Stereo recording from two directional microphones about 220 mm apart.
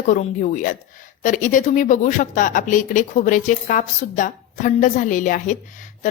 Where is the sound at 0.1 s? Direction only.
35° left (ahead or behind).